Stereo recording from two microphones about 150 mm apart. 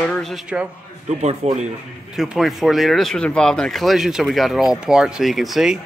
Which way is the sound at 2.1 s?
Centre (ahead or behind).